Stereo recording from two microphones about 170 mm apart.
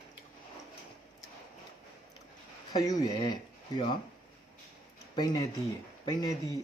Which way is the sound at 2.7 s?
20° left (ahead or behind).